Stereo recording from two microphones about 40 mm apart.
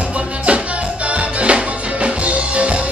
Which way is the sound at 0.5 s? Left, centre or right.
Right.